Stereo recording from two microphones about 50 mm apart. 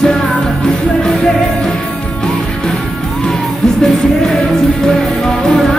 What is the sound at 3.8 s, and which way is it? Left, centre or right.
Music, centre.